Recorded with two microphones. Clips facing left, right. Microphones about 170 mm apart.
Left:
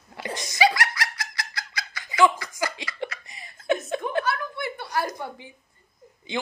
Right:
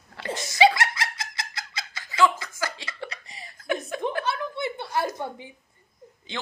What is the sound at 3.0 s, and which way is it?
Laughter, 30° right (ahead or behind).